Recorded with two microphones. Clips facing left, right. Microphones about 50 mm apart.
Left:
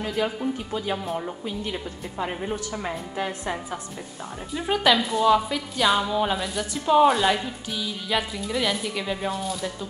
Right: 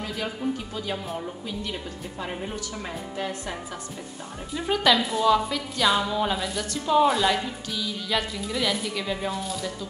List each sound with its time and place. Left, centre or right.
0.2 s a woman's voice: centre
4.6 s a woman's voice: centre